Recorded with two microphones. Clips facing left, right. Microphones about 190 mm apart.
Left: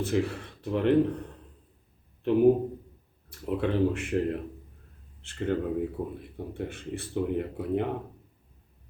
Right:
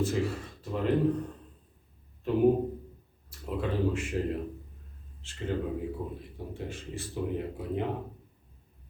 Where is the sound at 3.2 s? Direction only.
60° left (ahead or behind).